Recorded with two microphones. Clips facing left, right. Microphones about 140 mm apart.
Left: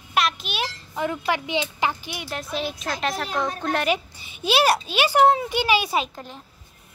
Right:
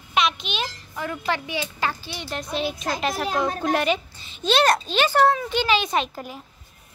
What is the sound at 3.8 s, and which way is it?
A child's voice, 10° left (ahead or behind).